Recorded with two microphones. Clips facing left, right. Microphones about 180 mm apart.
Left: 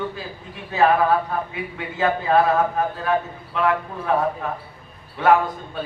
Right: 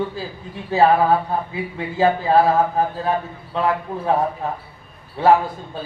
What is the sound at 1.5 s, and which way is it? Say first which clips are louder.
A woman's voice: right 3 dB; 30° right (ahead or behind).